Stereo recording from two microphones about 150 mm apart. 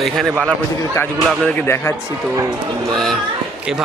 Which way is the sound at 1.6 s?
15° left (ahead or behind).